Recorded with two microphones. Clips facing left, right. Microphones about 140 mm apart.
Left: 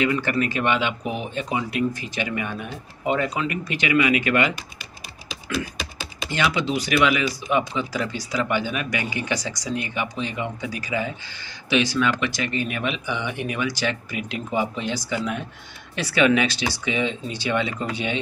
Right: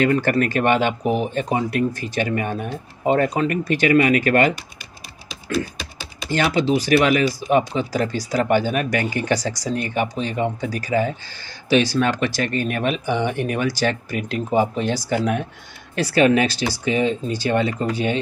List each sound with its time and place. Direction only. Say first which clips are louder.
0.0 s speech: right 4 dB; 45° right (ahead or behind)
6.3 s speech: right 5 dB; 40° right (ahead or behind)